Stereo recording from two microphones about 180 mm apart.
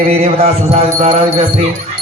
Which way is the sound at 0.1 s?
35° right (ahead or behind).